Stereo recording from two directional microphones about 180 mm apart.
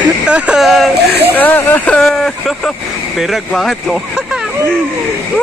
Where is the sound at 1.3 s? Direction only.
10° left (ahead or behind).